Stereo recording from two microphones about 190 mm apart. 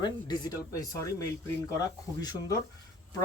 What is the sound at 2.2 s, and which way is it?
Speech, 20° left (ahead or behind).